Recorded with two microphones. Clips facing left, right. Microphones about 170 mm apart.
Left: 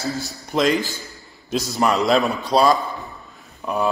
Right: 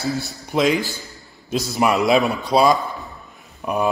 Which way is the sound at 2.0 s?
Centre (ahead or behind).